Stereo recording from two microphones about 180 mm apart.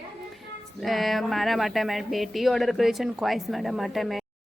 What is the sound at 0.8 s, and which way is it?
Speech, centre (ahead or behind).